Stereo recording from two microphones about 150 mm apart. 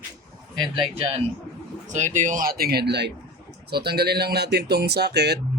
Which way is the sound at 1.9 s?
55° right (ahead or behind).